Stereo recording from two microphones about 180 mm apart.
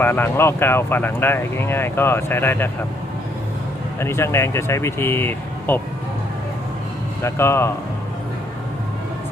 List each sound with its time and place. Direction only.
0.0 s speech: 10° left (ahead or behind)
4.0 s speech: 15° left (ahead or behind)
7.2 s speech: 15° left (ahead or behind)